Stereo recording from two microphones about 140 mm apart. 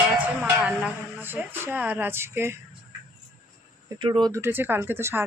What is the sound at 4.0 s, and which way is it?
Speech, 30° right (ahead or behind).